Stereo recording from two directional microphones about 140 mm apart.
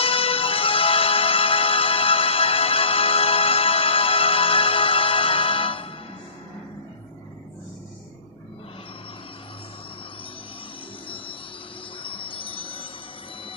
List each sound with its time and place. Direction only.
0.0 s music: 40° left (ahead or behind)
12.0 s chime: 40° left (ahead or behind)